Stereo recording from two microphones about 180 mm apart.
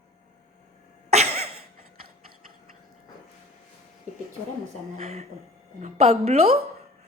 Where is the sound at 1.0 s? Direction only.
35° right (ahead or behind).